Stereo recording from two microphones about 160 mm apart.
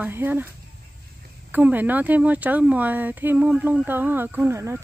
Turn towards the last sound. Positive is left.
turn(degrees=-15)  # may be behind; listen again after turning